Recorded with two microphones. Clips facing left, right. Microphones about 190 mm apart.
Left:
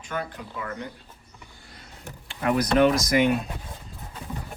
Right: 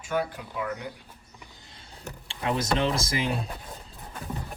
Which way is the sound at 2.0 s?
30° right (ahead or behind).